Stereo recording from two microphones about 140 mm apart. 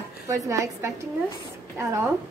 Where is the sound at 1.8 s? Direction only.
20° right (ahead or behind).